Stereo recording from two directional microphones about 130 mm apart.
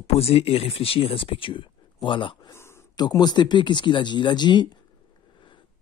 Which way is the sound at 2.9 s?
30° left (ahead or behind).